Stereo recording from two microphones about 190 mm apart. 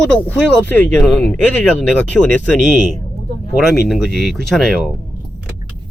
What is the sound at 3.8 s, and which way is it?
Speech, centre (ahead or behind).